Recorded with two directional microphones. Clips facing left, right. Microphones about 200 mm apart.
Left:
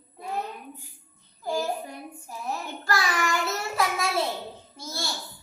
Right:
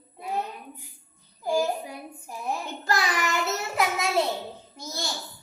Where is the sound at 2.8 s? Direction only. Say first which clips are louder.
Even; 20° right (ahead or behind).